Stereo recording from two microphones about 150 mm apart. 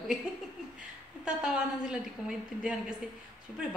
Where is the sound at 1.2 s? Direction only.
5° right (ahead or behind).